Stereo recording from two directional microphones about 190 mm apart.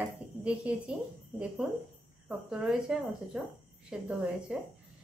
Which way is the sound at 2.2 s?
5° right (ahead or behind).